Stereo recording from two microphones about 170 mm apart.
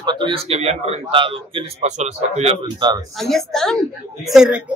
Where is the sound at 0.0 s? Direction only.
30° right (ahead or behind).